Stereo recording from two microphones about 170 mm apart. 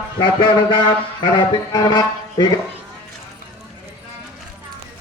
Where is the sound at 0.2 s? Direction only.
30° left (ahead or behind).